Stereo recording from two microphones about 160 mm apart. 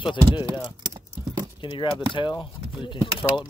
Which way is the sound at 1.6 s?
30° left (ahead or behind).